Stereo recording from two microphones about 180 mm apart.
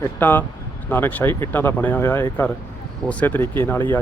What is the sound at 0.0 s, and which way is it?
Speech, 10° left (ahead or behind).